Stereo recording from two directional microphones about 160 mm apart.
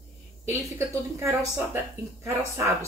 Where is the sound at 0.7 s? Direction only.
15° right (ahead or behind).